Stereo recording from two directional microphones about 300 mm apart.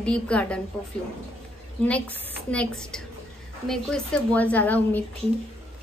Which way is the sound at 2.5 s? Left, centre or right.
Centre.